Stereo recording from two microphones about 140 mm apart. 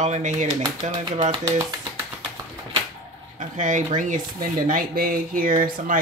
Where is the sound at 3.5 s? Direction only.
65° right (ahead or behind).